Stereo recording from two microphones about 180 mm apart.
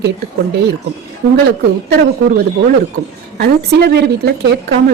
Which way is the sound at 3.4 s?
65° right (ahead or behind).